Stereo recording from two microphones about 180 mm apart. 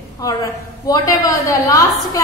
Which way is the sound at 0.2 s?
20° left (ahead or behind).